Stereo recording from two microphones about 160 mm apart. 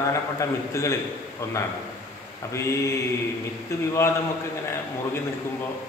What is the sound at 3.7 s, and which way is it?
Speech, 20° left (ahead or behind).